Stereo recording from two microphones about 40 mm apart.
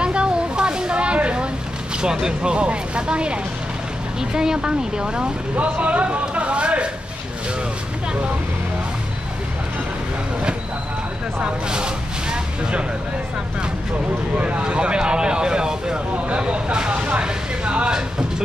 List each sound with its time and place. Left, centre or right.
0.0 s a sound: right
2.0 s speech: centre
4.2 s speech: centre
5.6 s speech: right
11.4 s a sound: right
14.3 s speech: right
16.3 s vehicle: right